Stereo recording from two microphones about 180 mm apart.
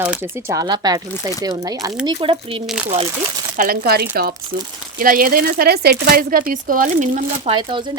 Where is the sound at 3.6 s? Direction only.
50° right (ahead or behind).